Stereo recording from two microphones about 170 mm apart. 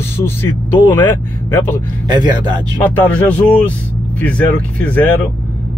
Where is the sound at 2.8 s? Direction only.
10° left (ahead or behind).